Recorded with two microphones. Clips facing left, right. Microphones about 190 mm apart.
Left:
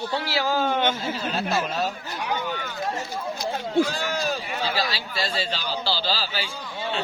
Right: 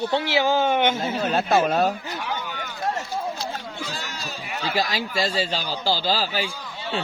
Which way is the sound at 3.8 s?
55° left (ahead or behind).